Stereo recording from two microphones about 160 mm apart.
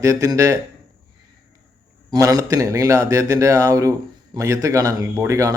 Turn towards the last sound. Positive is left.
turn(degrees=-20)  # may be behind; listen again after turning